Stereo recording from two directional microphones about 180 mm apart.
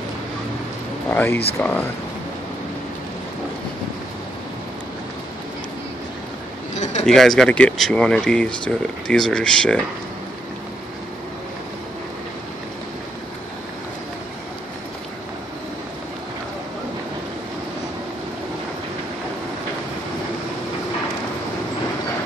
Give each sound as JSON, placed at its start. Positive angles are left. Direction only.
{"t": 1.1, "sound": "speech", "side_deg": 10}
{"t": 6.7, "sound": "a sound", "side_deg": 40}
{"t": 7.1, "sound": "speech", "side_deg": 0}